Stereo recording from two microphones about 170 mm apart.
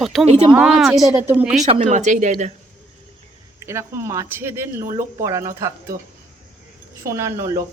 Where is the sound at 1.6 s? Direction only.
40° right (ahead or behind).